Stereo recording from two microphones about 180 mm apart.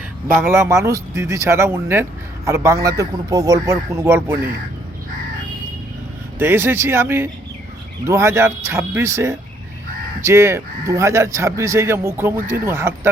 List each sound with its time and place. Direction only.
0.4 s speech: 15° right (ahead or behind)
6.4 s speech: 10° right (ahead or behind)